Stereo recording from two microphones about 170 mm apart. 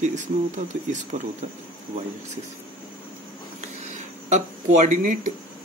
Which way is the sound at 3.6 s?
45° right (ahead or behind).